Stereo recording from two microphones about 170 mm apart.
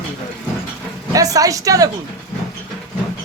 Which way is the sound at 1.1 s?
20° right (ahead or behind).